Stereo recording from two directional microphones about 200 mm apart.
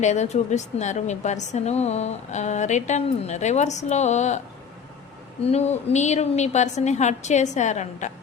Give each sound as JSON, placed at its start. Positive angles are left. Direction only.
{"t": 0.0, "sound": "a woman's voice", "side_deg": 35}
{"t": 5.4, "sound": "a woman's voice", "side_deg": 30}